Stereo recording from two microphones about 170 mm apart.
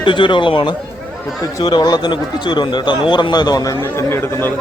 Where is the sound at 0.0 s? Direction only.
30° left (ahead or behind).